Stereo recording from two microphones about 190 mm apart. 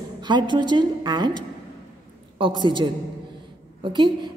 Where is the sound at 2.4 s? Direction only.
25° right (ahead or behind).